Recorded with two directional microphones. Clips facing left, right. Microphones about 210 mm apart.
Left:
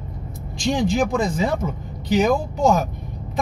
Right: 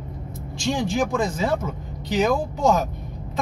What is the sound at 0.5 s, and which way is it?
Speech, 15° left (ahead or behind).